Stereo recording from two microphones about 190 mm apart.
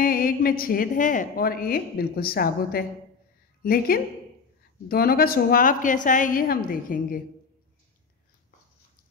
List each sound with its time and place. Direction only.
0.0 s a woman's voice: 50° left (ahead or behind)